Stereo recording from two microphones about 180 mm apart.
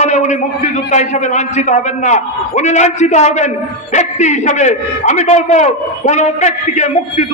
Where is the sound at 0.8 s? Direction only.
40° left (ahead or behind).